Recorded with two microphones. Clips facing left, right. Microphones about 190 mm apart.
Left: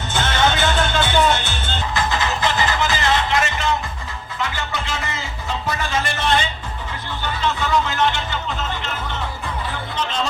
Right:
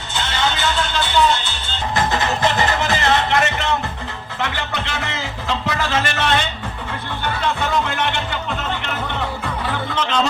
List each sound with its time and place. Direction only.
0.1 s music: 50° left (ahead or behind)
2.0 s music: 55° right (ahead or behind); by 6.4 s 70° right (ahead or behind)
7.4 s music: 60° right (ahead or behind)